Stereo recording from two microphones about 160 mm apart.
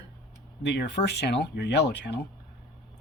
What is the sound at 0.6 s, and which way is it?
Speech, 90° left.